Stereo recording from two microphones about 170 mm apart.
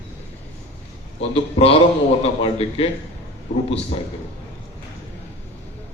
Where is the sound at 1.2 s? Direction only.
35° left (ahead or behind).